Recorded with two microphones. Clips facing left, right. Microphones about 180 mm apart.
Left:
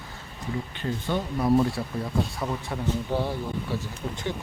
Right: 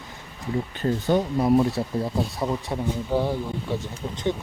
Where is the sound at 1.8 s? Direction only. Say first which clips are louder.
Right 3 dB; 30° right (ahead or behind).